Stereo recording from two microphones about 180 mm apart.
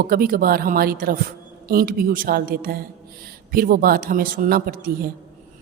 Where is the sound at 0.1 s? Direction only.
55° right (ahead or behind).